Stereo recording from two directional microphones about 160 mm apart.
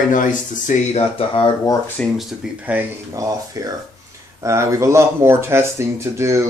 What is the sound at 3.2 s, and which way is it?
Speech, 20° right (ahead or behind).